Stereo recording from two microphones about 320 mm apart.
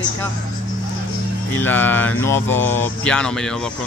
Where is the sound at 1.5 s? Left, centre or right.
Centre.